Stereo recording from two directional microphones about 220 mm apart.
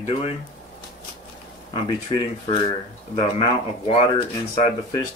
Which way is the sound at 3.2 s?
30° left (ahead or behind).